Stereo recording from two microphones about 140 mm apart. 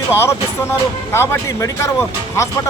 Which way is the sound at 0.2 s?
20° left (ahead or behind).